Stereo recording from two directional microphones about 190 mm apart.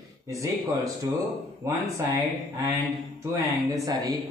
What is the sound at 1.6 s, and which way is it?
Speech, 15° right (ahead or behind).